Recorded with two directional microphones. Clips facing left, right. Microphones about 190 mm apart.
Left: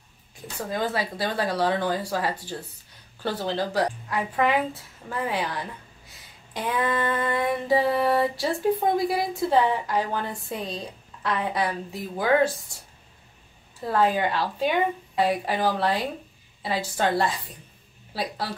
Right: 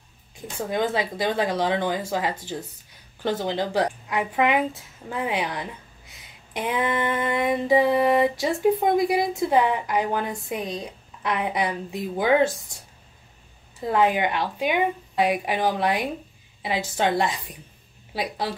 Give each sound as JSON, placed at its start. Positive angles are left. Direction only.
{"t": 0.7, "sound": "female singing", "side_deg": -20}
{"t": 3.2, "sound": "a woman's voice", "side_deg": -15}
{"t": 6.5, "sound": "female singing", "side_deg": -20}
{"t": 13.7, "sound": "female singing", "side_deg": -20}